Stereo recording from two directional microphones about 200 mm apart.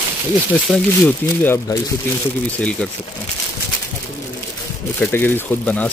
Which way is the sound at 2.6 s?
5° left (ahead or behind).